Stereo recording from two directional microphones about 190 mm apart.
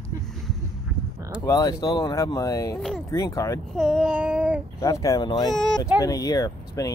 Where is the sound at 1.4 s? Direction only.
20° left (ahead or behind).